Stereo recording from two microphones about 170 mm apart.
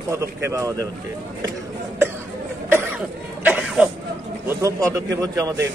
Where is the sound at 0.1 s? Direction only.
15° right (ahead or behind).